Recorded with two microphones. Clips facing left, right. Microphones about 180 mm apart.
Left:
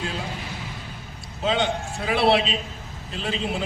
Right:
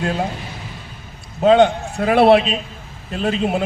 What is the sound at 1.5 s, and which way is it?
A man's voice, 55° right (ahead or behind).